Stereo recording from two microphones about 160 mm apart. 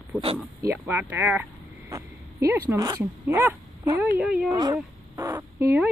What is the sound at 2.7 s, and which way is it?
Speech, 20° right (ahead or behind).